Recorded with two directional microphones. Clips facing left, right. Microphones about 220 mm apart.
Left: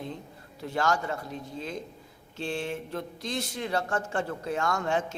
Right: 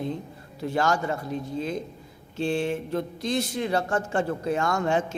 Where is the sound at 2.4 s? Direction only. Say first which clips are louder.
Right 7 dB; 10° right (ahead or behind).